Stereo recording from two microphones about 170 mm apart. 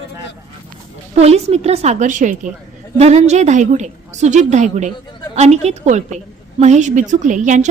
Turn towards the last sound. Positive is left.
turn(degrees=-45)  # may be behind; listen again after turning